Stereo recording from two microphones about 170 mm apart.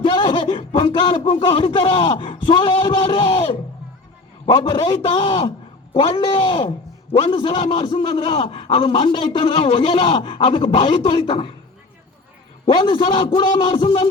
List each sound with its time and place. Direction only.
0.0 s a man's voice: 30° left (ahead or behind)
12.6 s a man's voice: 30° left (ahead or behind)